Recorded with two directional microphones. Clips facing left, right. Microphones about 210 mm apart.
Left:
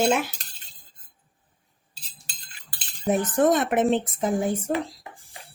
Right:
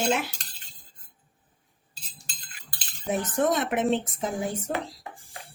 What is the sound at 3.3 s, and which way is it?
Speech, 50° left (ahead or behind).